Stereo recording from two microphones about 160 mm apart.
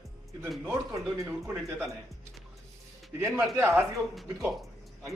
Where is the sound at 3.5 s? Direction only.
15° right (ahead or behind).